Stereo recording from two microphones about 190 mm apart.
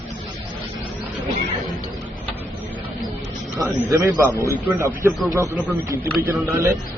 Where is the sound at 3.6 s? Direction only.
15° right (ahead or behind).